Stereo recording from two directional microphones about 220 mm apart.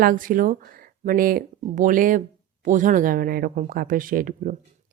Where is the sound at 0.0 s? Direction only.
40° right (ahead or behind).